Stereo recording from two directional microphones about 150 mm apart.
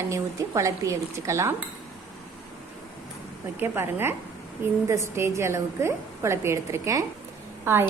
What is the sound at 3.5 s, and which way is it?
A woman's voice, 15° right (ahead or behind).